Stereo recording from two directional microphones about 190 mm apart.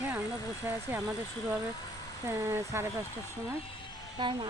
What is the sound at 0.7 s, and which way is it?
Speech, 15° right (ahead or behind).